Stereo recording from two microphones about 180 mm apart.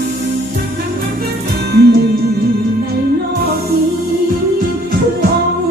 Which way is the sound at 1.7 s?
60° right (ahead or behind).